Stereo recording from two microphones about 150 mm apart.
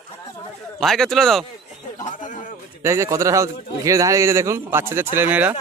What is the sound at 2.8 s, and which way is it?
A man's voice, 20° right (ahead or behind).